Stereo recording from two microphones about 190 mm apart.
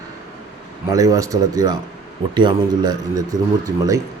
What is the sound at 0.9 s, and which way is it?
Speech, 20° right (ahead or behind).